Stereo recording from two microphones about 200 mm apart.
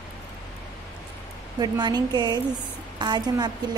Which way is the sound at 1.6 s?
20° right (ahead or behind).